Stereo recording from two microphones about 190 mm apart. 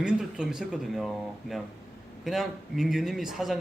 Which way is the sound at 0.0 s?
5° right (ahead or behind).